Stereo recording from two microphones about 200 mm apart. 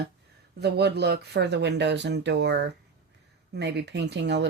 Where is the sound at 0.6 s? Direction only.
55° right (ahead or behind).